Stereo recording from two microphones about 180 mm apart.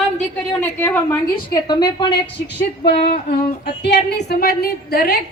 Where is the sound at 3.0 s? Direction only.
55° left (ahead or behind).